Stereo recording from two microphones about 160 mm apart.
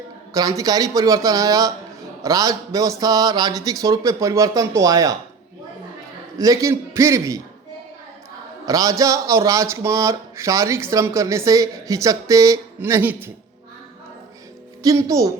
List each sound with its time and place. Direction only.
0.3 s speech: 20° right (ahead or behind)
6.4 s speech: 20° right (ahead or behind)
8.6 s speech: 20° right (ahead or behind)
14.8 s speech: 20° right (ahead or behind)